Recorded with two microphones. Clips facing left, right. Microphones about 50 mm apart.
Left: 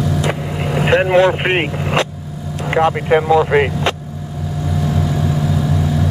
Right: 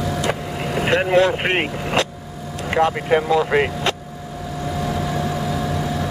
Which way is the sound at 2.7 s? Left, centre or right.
Centre.